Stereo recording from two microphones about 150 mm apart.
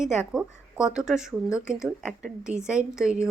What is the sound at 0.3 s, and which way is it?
Speech, 5° right (ahead or behind).